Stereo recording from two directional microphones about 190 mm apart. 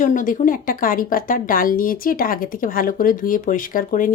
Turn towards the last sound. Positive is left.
turn(degrees=45)  # may be behind; listen again after turning